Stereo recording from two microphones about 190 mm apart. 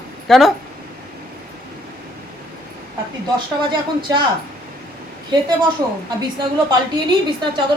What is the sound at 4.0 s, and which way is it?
Speech, 25° right (ahead or behind).